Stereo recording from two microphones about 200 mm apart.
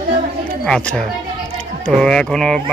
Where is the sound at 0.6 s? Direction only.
5° left (ahead or behind).